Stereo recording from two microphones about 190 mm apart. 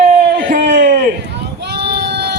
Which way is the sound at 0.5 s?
45° right (ahead or behind).